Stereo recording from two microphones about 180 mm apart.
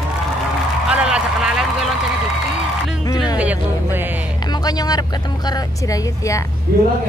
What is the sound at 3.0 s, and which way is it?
Music, 20° left (ahead or behind).